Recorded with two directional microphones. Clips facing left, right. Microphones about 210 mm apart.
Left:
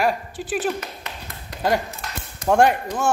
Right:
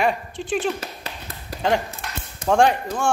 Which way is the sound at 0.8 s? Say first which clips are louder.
Even; 30° right (ahead or behind).